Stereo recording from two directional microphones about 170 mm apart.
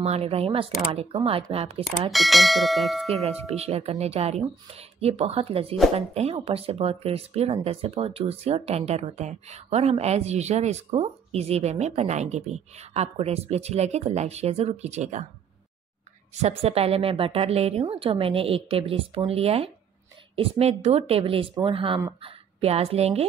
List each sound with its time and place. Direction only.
0.0 s speech: 35° right (ahead or behind)
1.9 s speech: centre (ahead or behind)
3.3 s speech: 40° right (ahead or behind)
16.3 s speech: 40° right (ahead or behind)